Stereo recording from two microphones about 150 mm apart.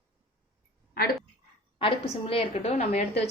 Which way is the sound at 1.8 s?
40° left (ahead or behind).